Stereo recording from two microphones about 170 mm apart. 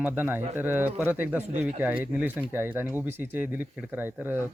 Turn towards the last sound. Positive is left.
turn(degrees=-10)  # may be behind; listen again after turning